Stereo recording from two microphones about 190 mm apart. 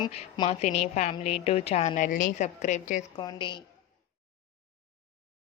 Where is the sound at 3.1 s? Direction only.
25° left (ahead or behind).